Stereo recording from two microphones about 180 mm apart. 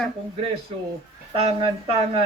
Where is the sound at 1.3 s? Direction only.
30° right (ahead or behind).